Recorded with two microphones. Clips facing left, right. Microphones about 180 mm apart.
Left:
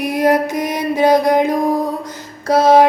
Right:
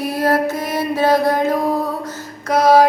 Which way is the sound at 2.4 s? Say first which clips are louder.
Left 2 dB; 25° left (ahead or behind).